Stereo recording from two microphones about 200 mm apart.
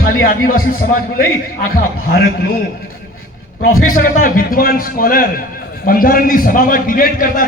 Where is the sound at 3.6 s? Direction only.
45° left (ahead or behind).